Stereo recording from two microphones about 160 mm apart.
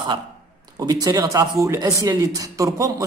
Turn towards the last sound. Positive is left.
turn(degrees=-20)  # may be behind; listen again after turning